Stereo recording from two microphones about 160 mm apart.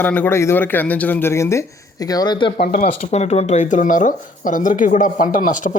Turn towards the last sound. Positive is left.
turn(degrees=55)  # may be behind; listen again after turning